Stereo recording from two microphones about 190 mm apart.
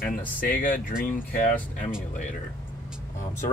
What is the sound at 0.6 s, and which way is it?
Speech, 50° left (ahead or behind).